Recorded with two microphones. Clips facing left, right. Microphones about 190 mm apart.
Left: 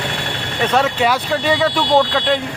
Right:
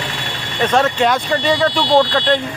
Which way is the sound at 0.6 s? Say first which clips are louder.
Right 2 dB; 5° left (ahead or behind).